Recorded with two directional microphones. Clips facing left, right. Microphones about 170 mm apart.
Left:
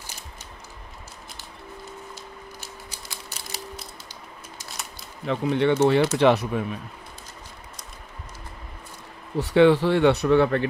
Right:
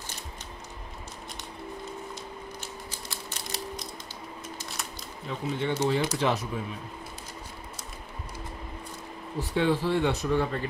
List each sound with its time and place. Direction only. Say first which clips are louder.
2.9 s a sound: right 1 dB; 10° left (ahead or behind)
5.2 s speech: left 9 dB; 70° left (ahead or behind)
9.4 s speech: left 9 dB; 75° left (ahead or behind)